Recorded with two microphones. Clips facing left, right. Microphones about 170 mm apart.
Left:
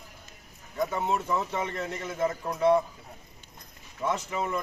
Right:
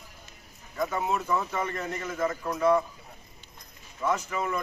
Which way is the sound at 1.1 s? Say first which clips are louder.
Even; 25° left (ahead or behind).